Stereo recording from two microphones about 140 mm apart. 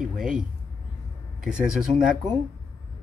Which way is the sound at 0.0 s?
5° right (ahead or behind).